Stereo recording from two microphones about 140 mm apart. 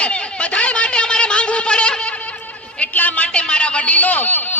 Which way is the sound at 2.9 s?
10° left (ahead or behind).